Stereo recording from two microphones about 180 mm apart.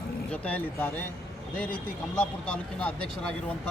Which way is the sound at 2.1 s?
5° left (ahead or behind).